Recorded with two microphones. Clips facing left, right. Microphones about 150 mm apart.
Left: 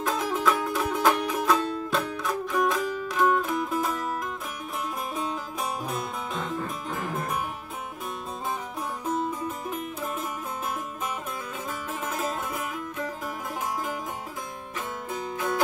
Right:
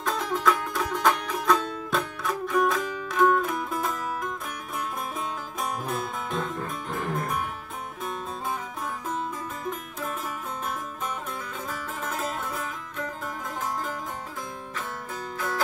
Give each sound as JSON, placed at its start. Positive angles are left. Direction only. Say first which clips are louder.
{"t": 0.0, "sound": "music", "louder": "even", "side_deg": 5}
{"t": 9.0, "sound": "music", "louder": "left 6 dB", "side_deg": 5}
{"t": 12.0, "sound": "music", "louder": "left 1 dB", "side_deg": 10}
{"t": 15.1, "sound": "music", "louder": "left 3 dB", "side_deg": 20}